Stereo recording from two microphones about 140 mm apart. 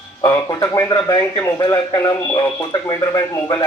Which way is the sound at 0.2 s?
25° left (ahead or behind).